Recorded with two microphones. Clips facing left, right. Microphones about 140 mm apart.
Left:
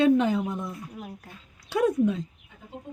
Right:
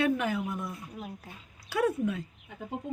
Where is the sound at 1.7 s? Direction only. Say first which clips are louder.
Left 5 dB; 20° left (ahead or behind).